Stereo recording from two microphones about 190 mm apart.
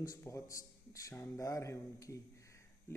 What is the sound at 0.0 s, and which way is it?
Speech, 15° left (ahead or behind).